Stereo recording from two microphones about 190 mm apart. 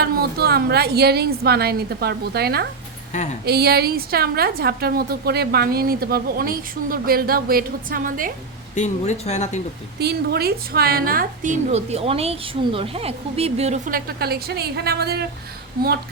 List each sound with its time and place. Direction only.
0.0 s a woman's voice: 55° right (ahead or behind)
3.1 s a woman's voice: 35° left (ahead or behind)
3.4 s a woman's voice: 55° right (ahead or behind)
8.7 s speech: 40° left (ahead or behind)
10.0 s a woman's voice: 55° right (ahead or behind)